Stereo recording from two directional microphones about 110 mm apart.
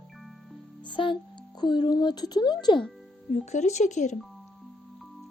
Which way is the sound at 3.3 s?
90° left.